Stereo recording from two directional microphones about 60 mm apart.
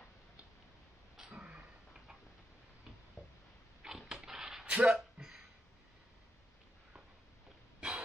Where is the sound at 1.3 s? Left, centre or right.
Right.